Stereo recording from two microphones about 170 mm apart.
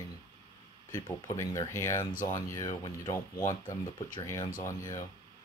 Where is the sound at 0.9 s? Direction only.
15° left (ahead or behind).